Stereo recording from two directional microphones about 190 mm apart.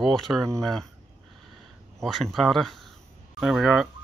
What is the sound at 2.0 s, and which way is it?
Speech, centre (ahead or behind).